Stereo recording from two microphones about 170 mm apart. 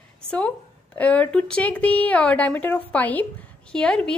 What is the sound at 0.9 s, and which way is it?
A woman's voice, 10° left (ahead or behind).